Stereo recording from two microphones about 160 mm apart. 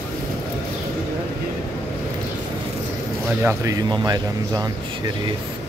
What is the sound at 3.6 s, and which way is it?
Speech, 20° right (ahead or behind).